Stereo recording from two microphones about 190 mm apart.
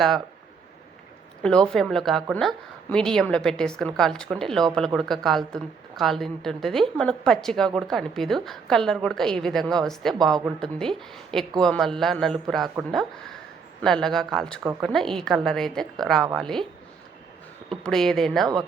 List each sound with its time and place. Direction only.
1.4 s a woman's voice: 5° left (ahead or behind)
13.8 s a woman's voice: centre (ahead or behind)
17.7 s a woman's voice: centre (ahead or behind)